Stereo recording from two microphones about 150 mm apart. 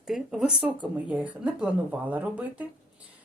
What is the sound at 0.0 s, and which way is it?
Speech, centre (ahead or behind).